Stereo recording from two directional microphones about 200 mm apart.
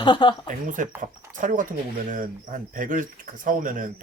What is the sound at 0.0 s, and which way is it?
Speech, 25° left (ahead or behind).